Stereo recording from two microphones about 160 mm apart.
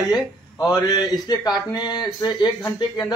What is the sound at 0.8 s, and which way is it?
Speech, 25° left (ahead or behind).